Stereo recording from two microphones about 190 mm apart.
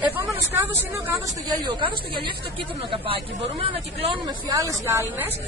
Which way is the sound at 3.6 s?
30° right (ahead or behind).